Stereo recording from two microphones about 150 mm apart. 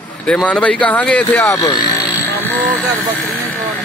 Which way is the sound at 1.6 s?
30° left (ahead or behind).